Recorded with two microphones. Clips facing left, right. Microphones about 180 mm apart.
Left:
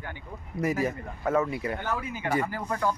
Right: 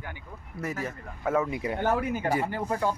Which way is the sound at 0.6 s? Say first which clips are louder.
Left 6 dB; 10° left (ahead or behind).